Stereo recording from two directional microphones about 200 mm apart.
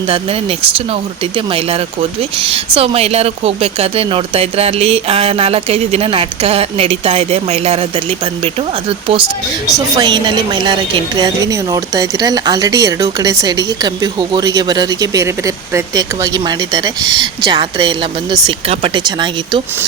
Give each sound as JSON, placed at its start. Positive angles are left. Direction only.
{"t": 0.1, "sound": "speech", "side_deg": -30}
{"t": 10.0, "sound": "a woman's voice", "side_deg": -25}